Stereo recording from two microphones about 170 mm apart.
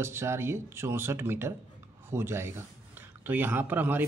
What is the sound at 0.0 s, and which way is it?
Speech, 15° right (ahead or behind).